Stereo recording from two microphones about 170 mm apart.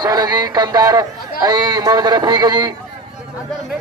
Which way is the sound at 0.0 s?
25° right (ahead or behind).